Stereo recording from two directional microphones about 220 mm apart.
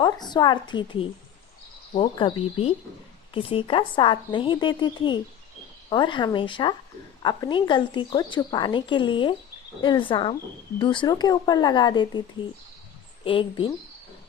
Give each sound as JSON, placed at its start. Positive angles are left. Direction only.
{"t": 0.0, "sound": "a woman's voice", "side_deg": 20}
{"t": 13.2, "sound": "a woman's voice", "side_deg": 25}